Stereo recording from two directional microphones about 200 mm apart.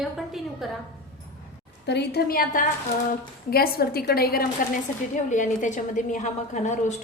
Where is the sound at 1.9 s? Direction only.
55° left (ahead or behind).